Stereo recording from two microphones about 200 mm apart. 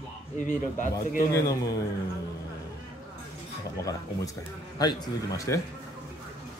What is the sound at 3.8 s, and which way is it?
A man's voice, 15° left (ahead or behind).